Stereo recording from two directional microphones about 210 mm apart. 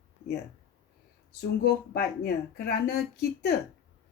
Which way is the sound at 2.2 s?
50° left (ahead or behind).